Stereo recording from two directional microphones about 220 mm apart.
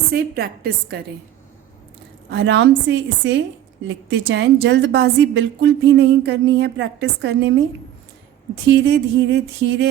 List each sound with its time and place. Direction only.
0.1 s a woman's voice: 45° right (ahead or behind)
2.3 s a woman's voice: 55° right (ahead or behind)
8.6 s a woman's voice: 55° right (ahead or behind)